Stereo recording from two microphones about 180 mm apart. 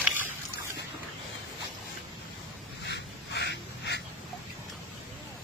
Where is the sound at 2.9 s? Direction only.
70° left (ahead or behind).